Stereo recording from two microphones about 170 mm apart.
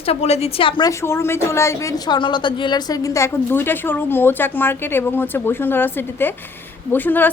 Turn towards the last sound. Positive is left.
turn(degrees=10)  # may be behind; listen again after turning